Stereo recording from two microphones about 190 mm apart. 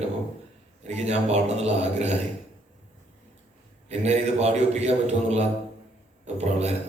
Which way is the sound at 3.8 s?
35° right (ahead or behind).